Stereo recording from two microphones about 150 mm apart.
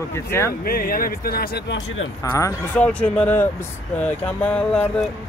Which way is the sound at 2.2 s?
20° left (ahead or behind).